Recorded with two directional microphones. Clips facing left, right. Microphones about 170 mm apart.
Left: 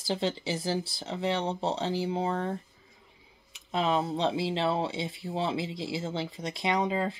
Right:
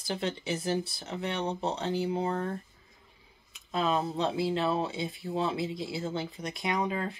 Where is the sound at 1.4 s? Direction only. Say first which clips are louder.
Left 2 dB; 30° left (ahead or behind).